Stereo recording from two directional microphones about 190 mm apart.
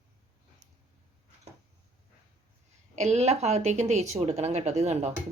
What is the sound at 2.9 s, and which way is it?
A woman's voice, 35° right (ahead or behind).